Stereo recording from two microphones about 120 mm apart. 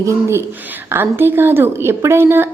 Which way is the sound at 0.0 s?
20° right (ahead or behind).